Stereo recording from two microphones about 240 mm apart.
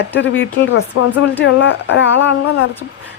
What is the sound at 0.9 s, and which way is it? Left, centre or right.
A woman's voice, left.